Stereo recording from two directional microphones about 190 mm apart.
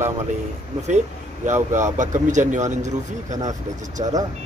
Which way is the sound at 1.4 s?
40° right (ahead or behind).